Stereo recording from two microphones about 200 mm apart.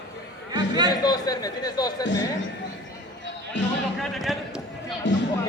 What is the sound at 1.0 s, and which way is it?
A man's voice, 20° left (ahead or behind).